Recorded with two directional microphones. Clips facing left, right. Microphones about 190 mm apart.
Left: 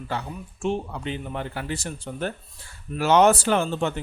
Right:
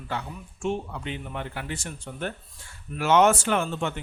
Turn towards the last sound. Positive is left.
turn(degrees=35)  # may be behind; listen again after turning